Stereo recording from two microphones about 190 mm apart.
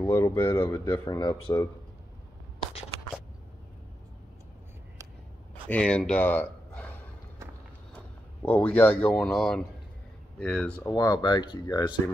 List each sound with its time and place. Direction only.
0.0 s speech: 15° left (ahead or behind)
5.7 s speech: 5° left (ahead or behind)
7.9 s a sound: 10° left (ahead or behind)
9.0 s speech: 5° left (ahead or behind)
10.9 s speech: 20° left (ahead or behind)